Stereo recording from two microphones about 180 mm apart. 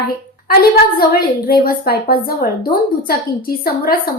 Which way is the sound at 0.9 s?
55° left (ahead or behind).